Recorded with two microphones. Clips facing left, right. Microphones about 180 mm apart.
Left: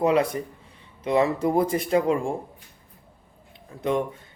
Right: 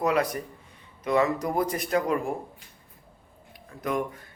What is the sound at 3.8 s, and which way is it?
Speech, 25° left (ahead or behind).